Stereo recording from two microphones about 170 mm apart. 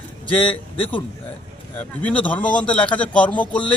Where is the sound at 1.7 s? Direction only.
10° left (ahead or behind).